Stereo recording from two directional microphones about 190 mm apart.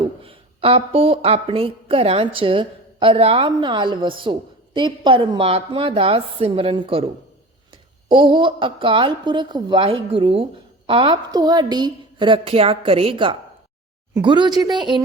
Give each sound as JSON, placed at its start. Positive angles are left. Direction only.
{"t": 0.0, "sound": "a woman's voice", "side_deg": -30}
{"t": 8.1, "sound": "a woman's voice", "side_deg": -25}